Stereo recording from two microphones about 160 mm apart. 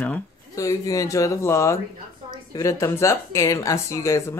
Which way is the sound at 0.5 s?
20° left (ahead or behind).